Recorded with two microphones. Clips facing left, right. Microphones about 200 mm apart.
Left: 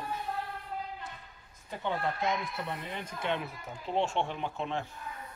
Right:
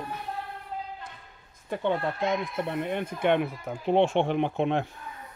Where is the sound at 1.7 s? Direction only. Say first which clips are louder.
Right 6 dB; 60° right (ahead or behind).